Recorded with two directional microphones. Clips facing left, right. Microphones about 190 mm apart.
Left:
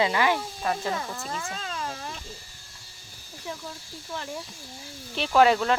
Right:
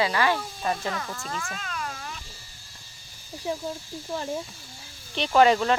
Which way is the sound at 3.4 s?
30° right (ahead or behind).